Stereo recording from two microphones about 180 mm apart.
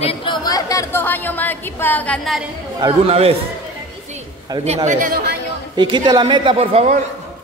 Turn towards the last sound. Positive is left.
turn(degrees=-35)  # may be behind; listen again after turning